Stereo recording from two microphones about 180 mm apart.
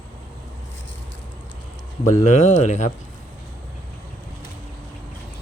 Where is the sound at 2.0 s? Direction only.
40° left (ahead or behind).